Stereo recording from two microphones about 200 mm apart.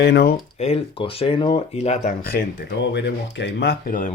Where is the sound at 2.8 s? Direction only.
60° left (ahead or behind); by 4.1 s 45° left (ahead or behind).